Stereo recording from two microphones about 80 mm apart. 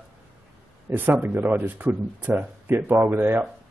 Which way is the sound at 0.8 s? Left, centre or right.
Right.